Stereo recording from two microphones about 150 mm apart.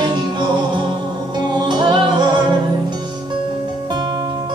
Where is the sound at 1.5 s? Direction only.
30° right (ahead or behind).